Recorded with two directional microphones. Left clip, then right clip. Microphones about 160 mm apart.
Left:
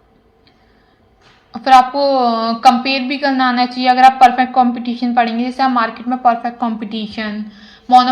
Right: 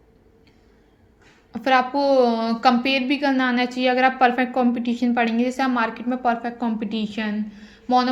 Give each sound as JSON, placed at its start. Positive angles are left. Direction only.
{"t": 1.5, "sound": "a woman's voice", "side_deg": -40}
{"t": 7.9, "sound": "mantra", "side_deg": -50}